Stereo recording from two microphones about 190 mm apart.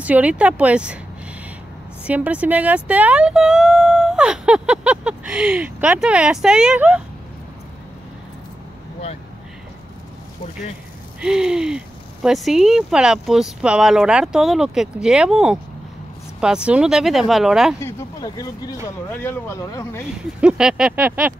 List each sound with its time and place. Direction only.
0.0 s speech: 5° right (ahead or behind)
2.0 s speech: 5° right (ahead or behind)
11.1 s speech: 5° right (ahead or behind)
17.7 s speech: 15° left (ahead or behind)
20.3 s speech: 5° right (ahead or behind)